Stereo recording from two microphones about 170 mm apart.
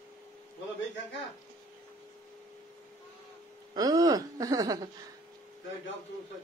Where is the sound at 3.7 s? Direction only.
20° right (ahead or behind).